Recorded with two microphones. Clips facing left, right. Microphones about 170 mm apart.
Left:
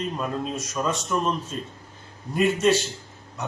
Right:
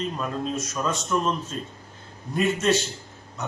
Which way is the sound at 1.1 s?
Centre (ahead or behind).